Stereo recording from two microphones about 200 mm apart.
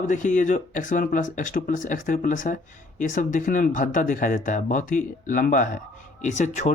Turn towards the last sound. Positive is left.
turn(degrees=35)  # may be behind; listen again after turning